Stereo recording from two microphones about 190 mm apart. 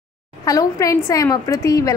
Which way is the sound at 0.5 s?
15° left (ahead or behind).